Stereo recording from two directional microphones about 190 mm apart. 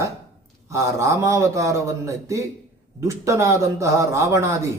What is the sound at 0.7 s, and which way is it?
Speech, 15° right (ahead or behind).